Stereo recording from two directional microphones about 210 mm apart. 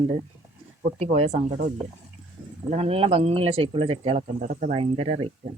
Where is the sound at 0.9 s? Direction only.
30° right (ahead or behind).